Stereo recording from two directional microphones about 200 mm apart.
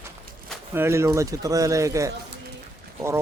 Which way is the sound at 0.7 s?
15° right (ahead or behind).